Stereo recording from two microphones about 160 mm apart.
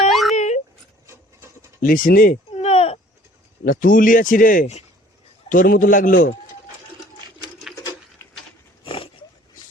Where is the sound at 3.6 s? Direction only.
60° left (ahead or behind).